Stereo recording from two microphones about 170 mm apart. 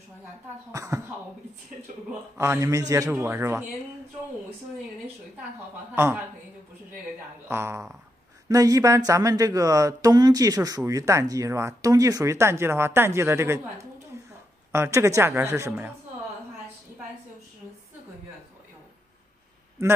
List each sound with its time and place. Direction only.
0.7 s a man's voice: 15° right (ahead or behind)
2.3 s a man's voice: 15° right (ahead or behind)
5.9 s a man's voice: 15° right (ahead or behind)
7.4 s a man's voice: 15° right (ahead or behind)
19.8 s a man's voice: 15° right (ahead or behind)